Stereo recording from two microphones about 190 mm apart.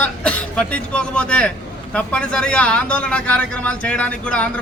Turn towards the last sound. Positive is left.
turn(degrees=5)  # may be behind; listen again after turning